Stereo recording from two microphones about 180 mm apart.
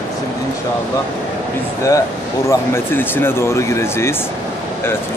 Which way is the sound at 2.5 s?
10° left (ahead or behind).